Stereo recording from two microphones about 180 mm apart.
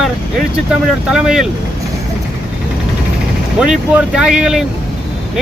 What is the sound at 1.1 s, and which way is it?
Speech, centre (ahead or behind).